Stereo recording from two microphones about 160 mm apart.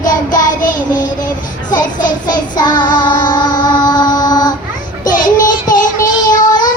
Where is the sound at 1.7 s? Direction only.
55° left (ahead or behind).